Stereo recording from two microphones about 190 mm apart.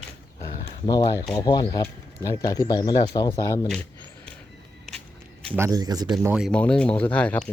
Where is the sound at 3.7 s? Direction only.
5° left (ahead or behind).